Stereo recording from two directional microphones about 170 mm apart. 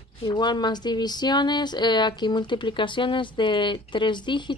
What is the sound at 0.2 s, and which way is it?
Speech, 25° left (ahead or behind).